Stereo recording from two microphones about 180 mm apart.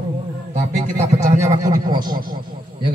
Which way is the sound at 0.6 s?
40° right (ahead or behind).